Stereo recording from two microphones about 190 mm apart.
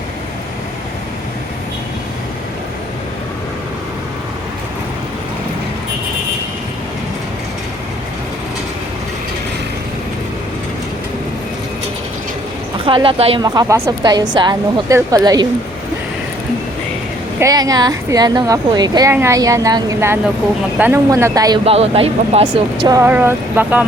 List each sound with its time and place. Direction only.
12.8 s a woman's voice: 25° right (ahead or behind)
13.4 s speech: 20° right (ahead or behind)
17.4 s a woman's voice: 20° right (ahead or behind)
21.6 s speech: 30° right (ahead or behind)
22.9 s a woman's voice: 10° right (ahead or behind)